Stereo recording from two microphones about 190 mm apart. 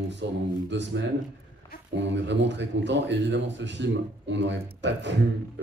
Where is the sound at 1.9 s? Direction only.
70° right (ahead or behind).